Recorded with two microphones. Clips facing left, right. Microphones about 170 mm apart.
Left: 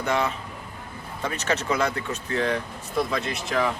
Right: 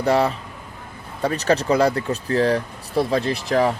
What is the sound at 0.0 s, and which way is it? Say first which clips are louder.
Speech: right 6 dB; 35° right (ahead or behind).